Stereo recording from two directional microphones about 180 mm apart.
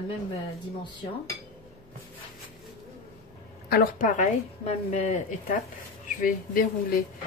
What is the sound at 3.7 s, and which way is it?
A woman's voice, 50° left (ahead or behind).